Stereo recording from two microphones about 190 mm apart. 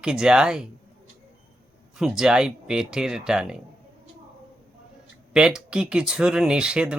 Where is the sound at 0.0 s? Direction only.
5° right (ahead or behind).